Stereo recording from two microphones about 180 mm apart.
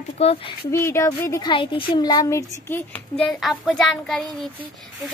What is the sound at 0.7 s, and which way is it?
Speech, 15° left (ahead or behind).